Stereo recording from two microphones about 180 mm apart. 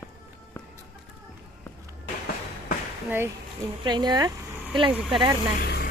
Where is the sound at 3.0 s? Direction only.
15° right (ahead or behind).